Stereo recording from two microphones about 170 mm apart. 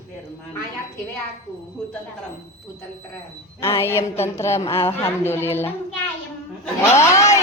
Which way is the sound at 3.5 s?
15° left (ahead or behind).